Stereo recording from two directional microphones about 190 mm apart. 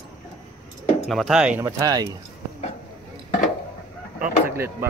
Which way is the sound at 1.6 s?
20° right (ahead or behind).